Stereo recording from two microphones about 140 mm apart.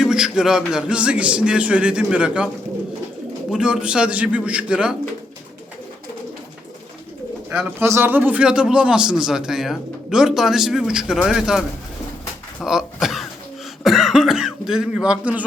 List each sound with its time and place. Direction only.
0.0 s a man's voice: 5° right (ahead or behind)
3.5 s a man's voice: 5° right (ahead or behind)
7.8 s a man's voice: 15° right (ahead or behind)
12.6 s a sound: centre (ahead or behind)
13.8 s speech: 5° right (ahead or behind)